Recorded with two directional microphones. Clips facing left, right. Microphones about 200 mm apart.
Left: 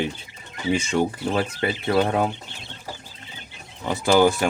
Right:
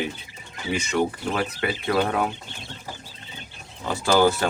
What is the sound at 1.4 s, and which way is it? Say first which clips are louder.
Speech: left 1 dB; 25° left (ahead or behind).